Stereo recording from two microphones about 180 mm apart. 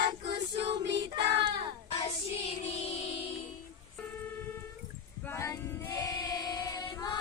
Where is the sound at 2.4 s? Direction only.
35° left (ahead or behind).